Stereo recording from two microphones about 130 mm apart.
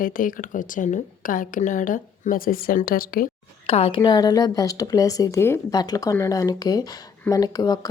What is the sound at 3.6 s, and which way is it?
Speech, 50° left (ahead or behind).